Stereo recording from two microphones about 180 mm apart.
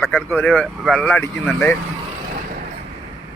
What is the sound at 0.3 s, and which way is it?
Speech, 10° left (ahead or behind).